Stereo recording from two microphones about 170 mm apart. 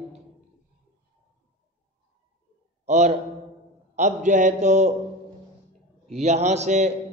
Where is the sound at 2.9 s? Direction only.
40° right (ahead or behind).